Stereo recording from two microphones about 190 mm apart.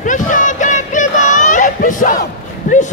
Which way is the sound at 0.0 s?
40° left (ahead or behind).